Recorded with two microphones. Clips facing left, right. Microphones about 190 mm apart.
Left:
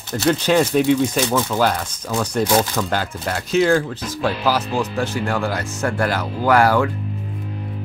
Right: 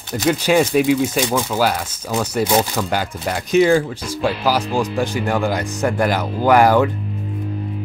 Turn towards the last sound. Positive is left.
turn(degrees=-20)  # may be behind; listen again after turning